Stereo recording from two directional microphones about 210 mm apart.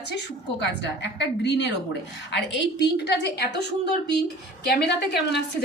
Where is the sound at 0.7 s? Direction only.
55° left (ahead or behind).